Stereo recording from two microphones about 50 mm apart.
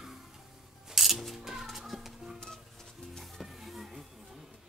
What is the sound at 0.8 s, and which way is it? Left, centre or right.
Music, centre.